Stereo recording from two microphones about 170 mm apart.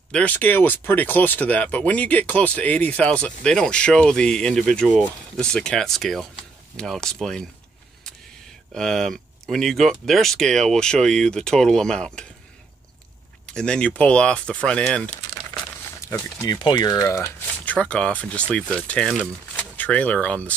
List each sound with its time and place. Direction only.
0.1 s speech: 10° left (ahead or behind)
8.7 s speech: centre (ahead or behind)
13.5 s speech: 5° left (ahead or behind)
15.5 s speech: 20° left (ahead or behind)
17.7 s speech: 5° left (ahead or behind)